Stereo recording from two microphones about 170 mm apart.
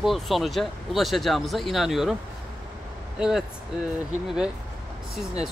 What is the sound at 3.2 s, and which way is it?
Speech, 5° right (ahead or behind).